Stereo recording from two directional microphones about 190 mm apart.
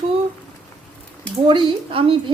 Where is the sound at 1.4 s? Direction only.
25° right (ahead or behind).